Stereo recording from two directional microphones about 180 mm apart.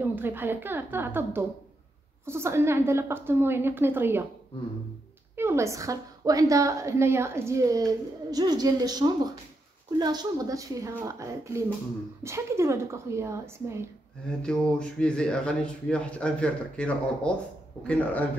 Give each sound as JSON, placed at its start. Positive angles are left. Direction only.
{"t": 0.0, "sound": "a woman's voice", "side_deg": -10}
{"t": 5.3, "sound": "a woman's voice", "side_deg": -15}
{"t": 14.4, "sound": "speech", "side_deg": 5}